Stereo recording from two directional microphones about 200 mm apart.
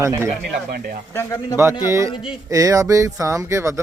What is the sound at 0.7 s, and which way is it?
Speech, 50° right (ahead or behind).